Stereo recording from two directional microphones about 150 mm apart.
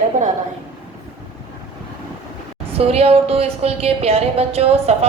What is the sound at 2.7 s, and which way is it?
A woman's voice, 40° right (ahead or behind).